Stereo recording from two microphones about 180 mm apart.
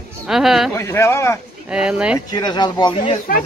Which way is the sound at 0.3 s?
Centre (ahead or behind).